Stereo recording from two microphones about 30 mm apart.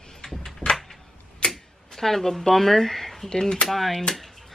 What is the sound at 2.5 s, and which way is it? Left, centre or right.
Speech, centre.